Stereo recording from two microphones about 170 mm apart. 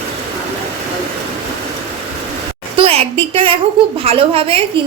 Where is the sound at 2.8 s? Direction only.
35° right (ahead or behind).